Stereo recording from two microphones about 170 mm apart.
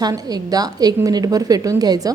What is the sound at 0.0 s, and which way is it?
A woman's voice, 20° right (ahead or behind).